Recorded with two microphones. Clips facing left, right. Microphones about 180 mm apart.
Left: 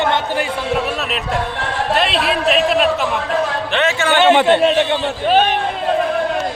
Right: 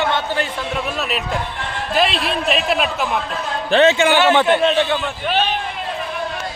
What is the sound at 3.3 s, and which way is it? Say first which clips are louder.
Speech: left 6 dB; 85° left.